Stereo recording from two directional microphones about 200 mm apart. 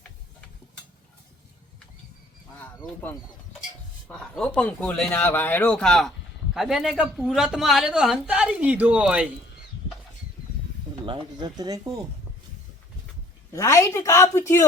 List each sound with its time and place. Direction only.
2.6 s honk: 10° left (ahead or behind)
4.1 s speech: 5° left (ahead or behind)
11.0 s speech: 25° right (ahead or behind)
13.5 s a woman's voice: 15° left (ahead or behind)